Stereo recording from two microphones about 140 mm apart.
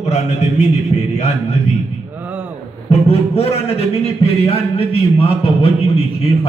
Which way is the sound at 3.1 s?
45° left (ahead or behind).